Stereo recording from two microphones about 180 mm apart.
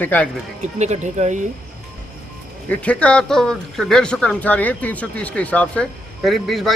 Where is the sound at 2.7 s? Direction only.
5° left (ahead or behind).